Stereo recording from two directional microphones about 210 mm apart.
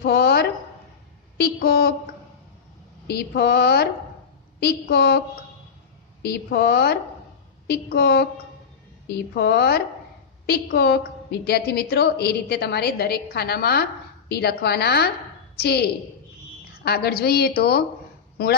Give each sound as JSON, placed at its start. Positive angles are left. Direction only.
{"t": 0.0, "sound": "a sound", "side_deg": 50}
{"t": 1.4, "sound": "speech", "side_deg": 50}
{"t": 3.1, "sound": "a woman's voice", "side_deg": 50}
{"t": 6.2, "sound": "a woman's voice", "side_deg": 50}